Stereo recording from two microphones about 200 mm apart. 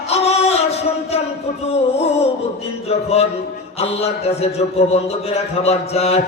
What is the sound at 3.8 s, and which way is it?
A man's voice, 30° left (ahead or behind).